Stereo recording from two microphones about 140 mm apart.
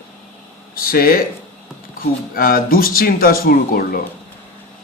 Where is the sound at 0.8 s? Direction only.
90° left.